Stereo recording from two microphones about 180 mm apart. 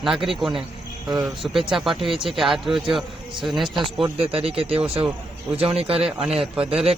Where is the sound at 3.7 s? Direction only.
30° right (ahead or behind).